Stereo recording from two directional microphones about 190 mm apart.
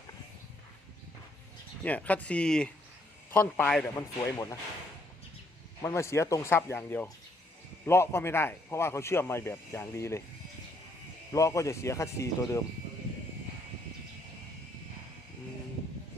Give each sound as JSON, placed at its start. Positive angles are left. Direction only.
{"t": 1.8, "sound": "a man's voice", "side_deg": 10}
{"t": 5.8, "sound": "a man's voice", "side_deg": 15}
{"t": 11.3, "sound": "a man's voice", "side_deg": 15}